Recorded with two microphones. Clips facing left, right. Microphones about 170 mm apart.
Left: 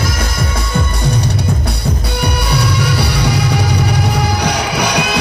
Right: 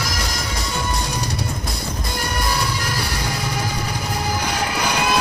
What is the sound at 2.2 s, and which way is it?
Music, 70° left (ahead or behind).